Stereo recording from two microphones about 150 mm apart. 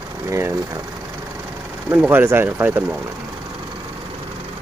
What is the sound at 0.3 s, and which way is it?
Speech, 20° right (ahead or behind).